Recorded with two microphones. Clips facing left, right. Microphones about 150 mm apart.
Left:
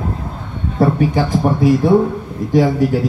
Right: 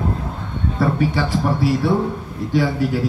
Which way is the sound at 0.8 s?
45° left (ahead or behind).